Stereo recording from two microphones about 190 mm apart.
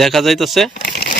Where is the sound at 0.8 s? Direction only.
55° left (ahead or behind).